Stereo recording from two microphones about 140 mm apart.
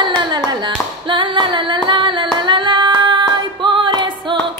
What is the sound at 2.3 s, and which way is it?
Singing, 35° right (ahead or behind).